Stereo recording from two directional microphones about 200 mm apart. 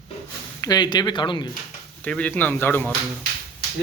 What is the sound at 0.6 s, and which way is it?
Speech, 20° left (ahead or behind).